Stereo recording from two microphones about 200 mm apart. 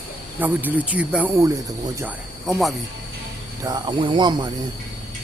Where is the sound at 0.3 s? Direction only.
10° right (ahead or behind).